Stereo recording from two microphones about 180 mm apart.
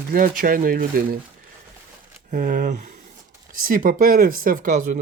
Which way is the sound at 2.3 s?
50° right (ahead or behind).